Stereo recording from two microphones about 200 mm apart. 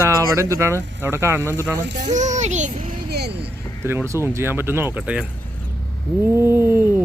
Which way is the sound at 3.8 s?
10° right (ahead or behind).